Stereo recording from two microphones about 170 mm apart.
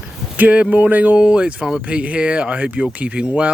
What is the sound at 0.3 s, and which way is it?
Speech, 10° right (ahead or behind).